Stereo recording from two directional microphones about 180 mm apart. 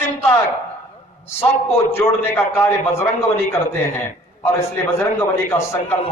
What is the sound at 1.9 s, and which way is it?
A man's voice, 15° left (ahead or behind).